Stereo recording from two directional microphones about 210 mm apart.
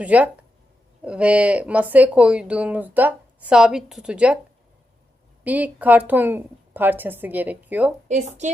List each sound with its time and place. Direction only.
0.0 s a woman's voice: 5° right (ahead or behind)
5.4 s a woman's voice: 5° right (ahead or behind)
8.0 s speech: 35° right (ahead or behind)